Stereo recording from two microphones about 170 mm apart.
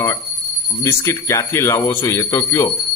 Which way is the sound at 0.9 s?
15° left (ahead or behind).